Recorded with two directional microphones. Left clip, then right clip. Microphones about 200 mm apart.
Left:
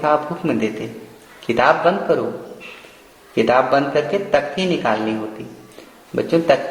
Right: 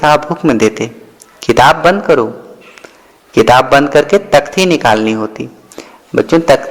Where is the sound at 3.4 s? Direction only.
50° right (ahead or behind).